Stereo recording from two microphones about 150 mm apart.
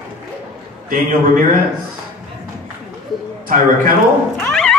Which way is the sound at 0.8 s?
65° right (ahead or behind).